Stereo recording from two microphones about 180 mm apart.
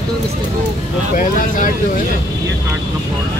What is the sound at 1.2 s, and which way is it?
Speech, 50° left (ahead or behind).